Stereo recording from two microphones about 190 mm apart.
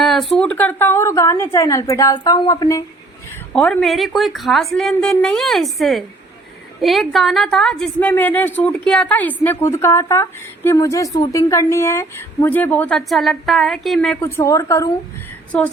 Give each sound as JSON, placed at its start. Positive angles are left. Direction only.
{"t": 0.0, "sound": "a sound", "side_deg": 0}
{"t": 0.3, "sound": "a woman's voice", "side_deg": 5}
{"t": 3.5, "sound": "a woman's voice", "side_deg": 5}